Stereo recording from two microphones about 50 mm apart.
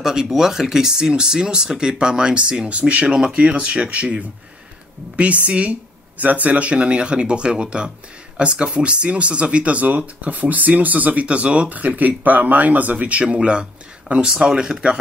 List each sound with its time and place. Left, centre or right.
0.0 s speech: centre